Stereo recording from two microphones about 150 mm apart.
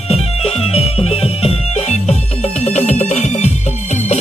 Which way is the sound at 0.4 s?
40° left (ahead or behind).